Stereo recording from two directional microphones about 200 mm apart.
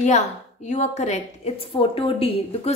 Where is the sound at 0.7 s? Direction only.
35° left (ahead or behind).